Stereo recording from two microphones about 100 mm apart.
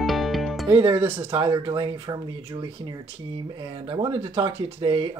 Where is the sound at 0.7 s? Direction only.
50° right (ahead or behind).